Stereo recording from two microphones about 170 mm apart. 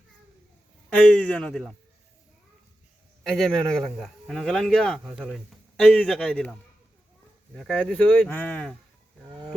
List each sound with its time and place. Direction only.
1.1 s a man's voice: 5° left (ahead or behind)
3.2 s a man's voice: centre (ahead or behind)
9.3 s a sound: 25° right (ahead or behind)